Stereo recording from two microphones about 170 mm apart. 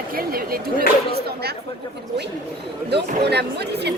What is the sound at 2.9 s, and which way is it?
Speech, 75° right (ahead or behind).